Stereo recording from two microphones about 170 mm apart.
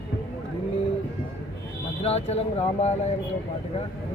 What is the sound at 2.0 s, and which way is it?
Speech, 40° left (ahead or behind).